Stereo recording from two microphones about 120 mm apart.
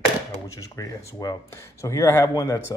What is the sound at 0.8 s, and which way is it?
Speech, 25° left (ahead or behind).